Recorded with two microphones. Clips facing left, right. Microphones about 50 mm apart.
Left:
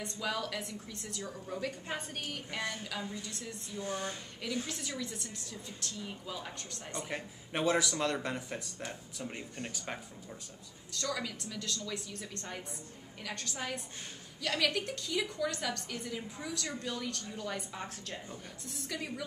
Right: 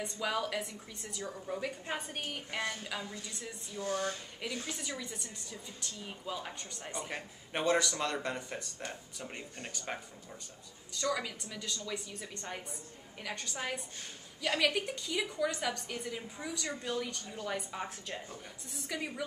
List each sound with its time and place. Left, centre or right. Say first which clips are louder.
0.0 s a woman's voice: right 2 dB; centre
3.8 s a sound: right 3 dB; centre
4.6 s a woman's voice: left 1 dB; centre
10.9 s a woman's voice: right 2 dB; centre